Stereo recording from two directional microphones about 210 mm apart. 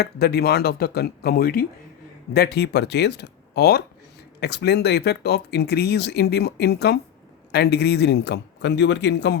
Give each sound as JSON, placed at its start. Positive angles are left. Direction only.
{"t": 0.0, "sound": "speech", "side_deg": 50}